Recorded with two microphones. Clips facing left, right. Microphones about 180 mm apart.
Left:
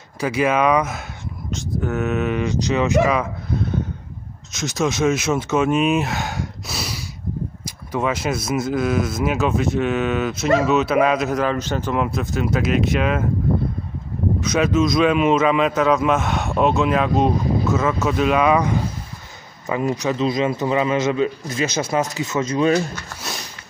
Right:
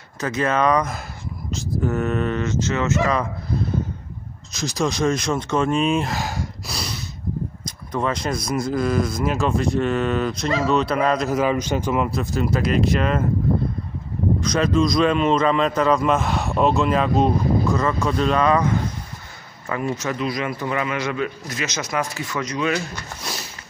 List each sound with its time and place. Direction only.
0.2 s speech: 10° left (ahead or behind)
4.5 s a man's voice: centre (ahead or behind)
11.3 s a man's voice: 10° right (ahead or behind)
12.0 s a man's voice: centre (ahead or behind)
14.4 s a man's voice: 5° left (ahead or behind); by 22.8 s 30° left (ahead or behind)